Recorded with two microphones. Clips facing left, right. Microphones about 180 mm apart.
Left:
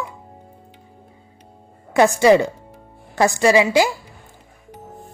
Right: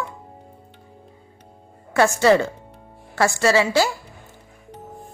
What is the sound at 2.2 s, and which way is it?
Speech, 15° left (ahead or behind).